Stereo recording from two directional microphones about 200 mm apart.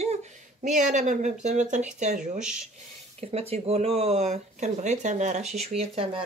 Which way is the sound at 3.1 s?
30° right (ahead or behind).